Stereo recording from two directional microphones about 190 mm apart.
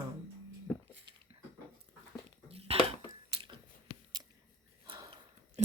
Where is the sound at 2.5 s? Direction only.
30° right (ahead or behind).